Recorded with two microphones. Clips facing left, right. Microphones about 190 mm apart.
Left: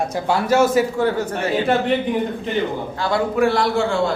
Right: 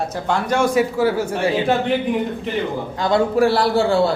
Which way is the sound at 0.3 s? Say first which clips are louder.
Left 2 dB; 5° left (ahead or behind).